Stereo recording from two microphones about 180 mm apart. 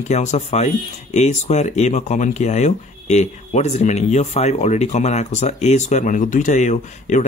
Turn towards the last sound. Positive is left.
turn(degrees=40)  # may be behind; listen again after turning